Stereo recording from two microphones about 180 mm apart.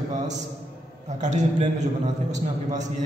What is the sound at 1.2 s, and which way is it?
Speech, 40° right (ahead or behind).